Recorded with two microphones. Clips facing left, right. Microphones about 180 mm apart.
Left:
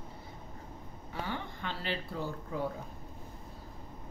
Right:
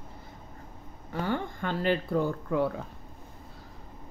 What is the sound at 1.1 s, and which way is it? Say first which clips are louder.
Speech: right 8 dB; 50° right (ahead or behind).